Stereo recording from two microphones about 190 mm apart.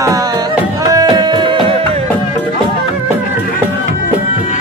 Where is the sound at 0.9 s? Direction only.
20° right (ahead or behind).